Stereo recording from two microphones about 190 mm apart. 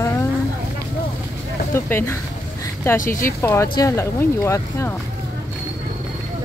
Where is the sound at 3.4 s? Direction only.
15° left (ahead or behind).